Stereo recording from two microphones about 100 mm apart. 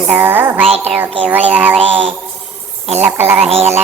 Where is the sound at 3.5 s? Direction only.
90° right.